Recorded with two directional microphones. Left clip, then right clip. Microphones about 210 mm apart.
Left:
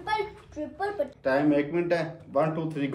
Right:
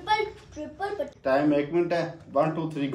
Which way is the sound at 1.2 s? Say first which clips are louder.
Right 1 dB; centre (ahead or behind).